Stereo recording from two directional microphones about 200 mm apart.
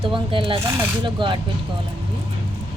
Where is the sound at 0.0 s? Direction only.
25° right (ahead or behind).